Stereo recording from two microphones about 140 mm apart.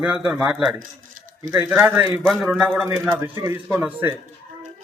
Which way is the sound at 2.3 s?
Centre (ahead or behind).